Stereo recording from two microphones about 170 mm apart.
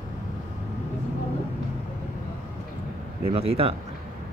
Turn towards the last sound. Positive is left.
turn(degrees=-35)  # may be behind; listen again after turning